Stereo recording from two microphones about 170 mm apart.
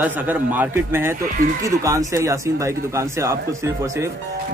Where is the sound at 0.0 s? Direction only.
10° right (ahead or behind).